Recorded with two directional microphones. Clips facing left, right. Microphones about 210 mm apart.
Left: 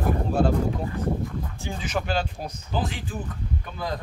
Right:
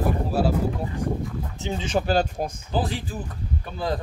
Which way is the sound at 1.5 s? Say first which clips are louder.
Right 7 dB; 20° right (ahead or behind).